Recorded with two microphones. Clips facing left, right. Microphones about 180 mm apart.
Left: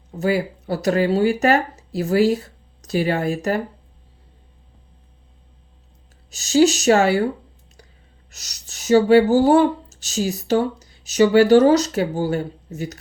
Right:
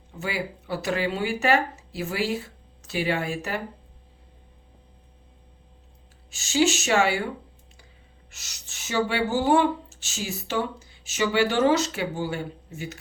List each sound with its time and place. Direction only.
0.1 s speech: 40° left (ahead or behind)
6.3 s speech: 40° left (ahead or behind)
8.3 s speech: 40° left (ahead or behind)